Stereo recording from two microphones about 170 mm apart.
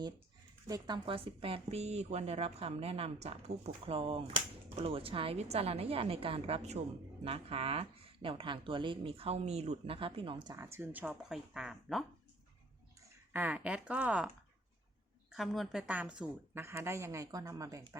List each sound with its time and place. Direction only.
0.7 s speech: 30° right (ahead or behind)
10.5 s speech: 15° right (ahead or behind)
13.3 s a woman's voice: 10° right (ahead or behind)
15.3 s a woman's voice: centre (ahead or behind); by 17.9 s 20° right (ahead or behind)